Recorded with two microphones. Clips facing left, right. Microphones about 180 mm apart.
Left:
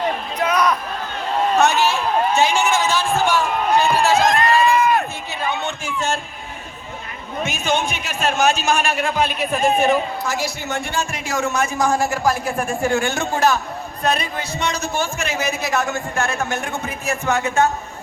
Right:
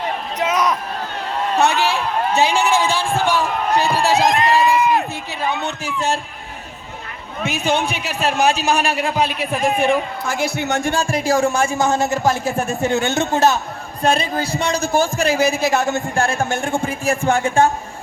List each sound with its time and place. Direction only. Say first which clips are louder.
0.3 s a sound: even; 20° right (ahead or behind)
1.5 s a man's voice: even; 30° right (ahead or behind)
2.3 s run: right 4 dB; 35° right (ahead or behind)
4.3 s a sound: right 1 dB; 20° right (ahead or behind)
5.6 s a sound: right 2 dB; 35° right (ahead or behind)
7.4 s a man's voice: right 2 dB; 35° right (ahead or behind)
9.6 s a man's voice: left 1 dB; 25° left (ahead or behind)
10.2 s speech: right 3 dB; 55° right (ahead or behind)
10.8 s speech: right 3 dB; 45° right (ahead or behind)
11.0 s a man's voice: right 7 dB; 35° right (ahead or behind)